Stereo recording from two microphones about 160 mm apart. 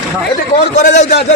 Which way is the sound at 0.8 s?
50° left (ahead or behind).